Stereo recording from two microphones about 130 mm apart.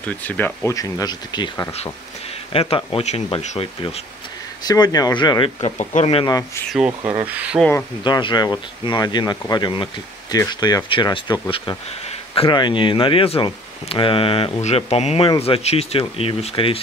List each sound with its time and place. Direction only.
0.0 s speech: 10° left (ahead or behind)
0.7 s speech: 25° left (ahead or behind)
2.5 s speech: 45° left (ahead or behind)
4.6 s speech: 30° left (ahead or behind)
5.6 s speech: 60° left (ahead or behind)
6.2 s speech: 30° left (ahead or behind)
7.2 s speech: 10° right (ahead or behind)
8.0 s speech: 35° left (ahead or behind)
14.6 s speech: 55° left (ahead or behind)